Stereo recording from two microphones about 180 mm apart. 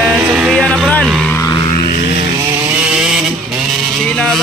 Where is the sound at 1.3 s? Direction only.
20° left (ahead or behind).